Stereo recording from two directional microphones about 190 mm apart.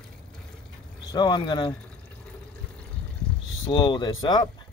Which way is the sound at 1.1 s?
20° left (ahead or behind).